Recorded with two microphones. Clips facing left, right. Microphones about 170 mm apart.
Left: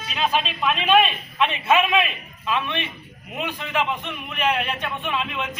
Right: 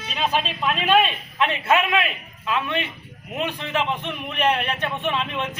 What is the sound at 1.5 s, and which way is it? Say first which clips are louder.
Speech: even; 20° left (ahead or behind).